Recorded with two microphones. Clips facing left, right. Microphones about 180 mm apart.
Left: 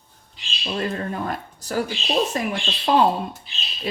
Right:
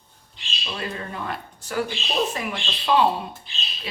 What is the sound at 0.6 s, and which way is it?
Speech, 45° left (ahead or behind).